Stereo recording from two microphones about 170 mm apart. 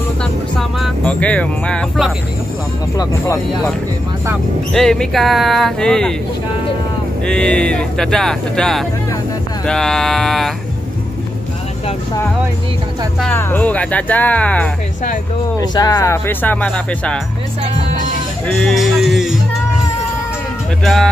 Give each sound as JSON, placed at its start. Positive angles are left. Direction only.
{"t": 0.2, "sound": "music", "side_deg": 0}
{"t": 3.0, "sound": "speech", "side_deg": 20}
{"t": 4.7, "sound": "speech", "side_deg": 5}
{"t": 7.2, "sound": "speech", "side_deg": 5}
{"t": 13.2, "sound": "speech", "side_deg": 10}
{"t": 15.6, "sound": "speech", "side_deg": 20}
{"t": 18.6, "sound": "speech", "side_deg": 0}
{"t": 20.8, "sound": "speech", "side_deg": 0}